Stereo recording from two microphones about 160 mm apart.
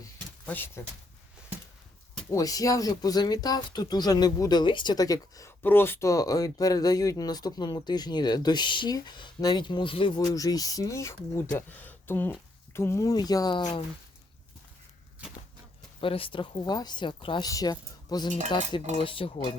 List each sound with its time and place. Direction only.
0.4 s speech: 10° left (ahead or behind)
2.3 s speech: 20° left (ahead or behind)
16.0 s speech: 35° left (ahead or behind)
18.9 s cutlery: 35° left (ahead or behind)